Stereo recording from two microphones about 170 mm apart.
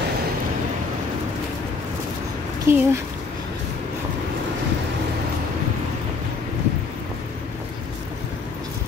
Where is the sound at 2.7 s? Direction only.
15° right (ahead or behind).